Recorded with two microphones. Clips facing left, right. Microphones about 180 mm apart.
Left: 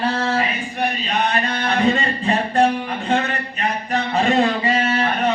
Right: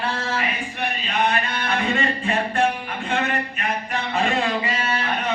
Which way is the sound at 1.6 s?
35° left (ahead or behind).